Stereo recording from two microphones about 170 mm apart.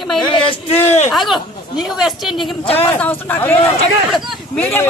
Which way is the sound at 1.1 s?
Centre (ahead or behind).